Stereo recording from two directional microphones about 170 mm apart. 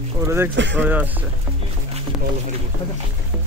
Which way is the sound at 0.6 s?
90° right.